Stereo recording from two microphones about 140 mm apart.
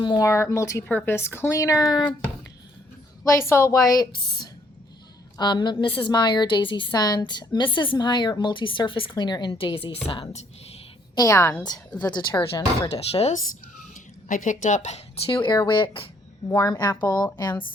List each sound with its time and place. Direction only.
0.0 s speech: 35° left (ahead or behind)
0.5 s speech: 20° left (ahead or behind)
3.3 s a woman's voice: 20° left (ahead or behind); by 9.9 s 40° left (ahead or behind)
11.1 s speech: 25° left (ahead or behind)
11.6 s speech: 30° left (ahead or behind)
13.1 s speech: 50° left (ahead or behind)
13.9 s a sound: 65° left (ahead or behind)
15.3 s a woman's voice: 35° left (ahead or behind)
16.6 s speech: 25° left (ahead or behind)
17.1 s a woman's voice: 10° left (ahead or behind)